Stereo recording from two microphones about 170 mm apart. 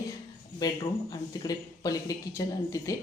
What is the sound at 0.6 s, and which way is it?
Speech, 25° left (ahead or behind).